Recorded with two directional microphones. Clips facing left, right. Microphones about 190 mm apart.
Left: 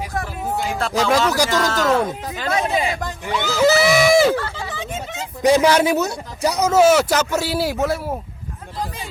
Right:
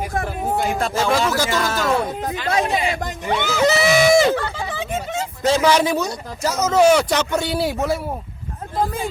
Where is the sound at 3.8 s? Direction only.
5° left (ahead or behind).